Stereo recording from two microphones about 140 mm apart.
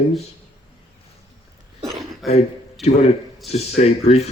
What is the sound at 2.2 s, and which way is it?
Speech, centre (ahead or behind).